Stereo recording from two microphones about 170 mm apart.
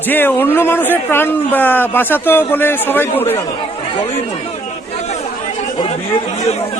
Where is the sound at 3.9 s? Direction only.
35° left (ahead or behind).